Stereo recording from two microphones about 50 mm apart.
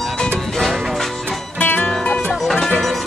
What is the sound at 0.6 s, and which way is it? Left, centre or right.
Music, centre.